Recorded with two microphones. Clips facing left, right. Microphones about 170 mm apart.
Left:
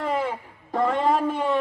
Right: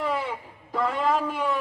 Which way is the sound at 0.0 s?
45° left (ahead or behind).